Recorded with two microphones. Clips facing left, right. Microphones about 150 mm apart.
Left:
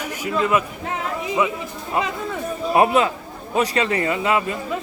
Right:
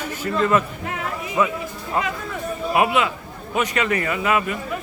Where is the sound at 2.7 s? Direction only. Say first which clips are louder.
Left 3 dB; 35° left (ahead or behind).